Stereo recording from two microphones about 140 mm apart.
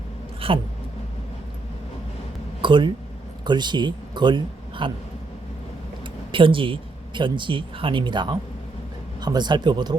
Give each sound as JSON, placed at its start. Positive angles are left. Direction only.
{"t": 0.3, "sound": "a sound", "side_deg": -40}
{"t": 2.6, "sound": "a man's voice", "side_deg": -35}
{"t": 6.3, "sound": "speech", "side_deg": -40}